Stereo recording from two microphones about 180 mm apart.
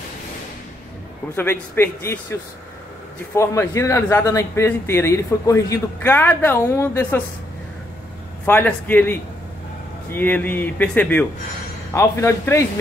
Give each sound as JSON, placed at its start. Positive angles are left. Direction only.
{"t": 1.3, "sound": "speech", "side_deg": 10}
{"t": 3.3, "sound": "speech", "side_deg": 15}
{"t": 8.5, "sound": "speech", "side_deg": 10}